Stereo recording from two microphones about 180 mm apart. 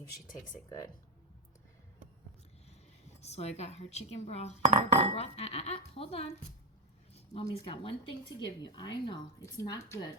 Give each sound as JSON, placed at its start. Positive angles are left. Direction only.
{"t": 3.2, "sound": "a woman's voice", "side_deg": 35}
{"t": 4.6, "sound": "cutlery", "side_deg": -40}
{"t": 5.1, "sound": "a woman's voice", "side_deg": 35}
{"t": 7.5, "sound": "speech", "side_deg": 30}